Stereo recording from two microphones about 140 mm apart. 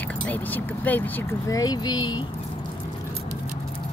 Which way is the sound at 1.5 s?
30° left (ahead or behind).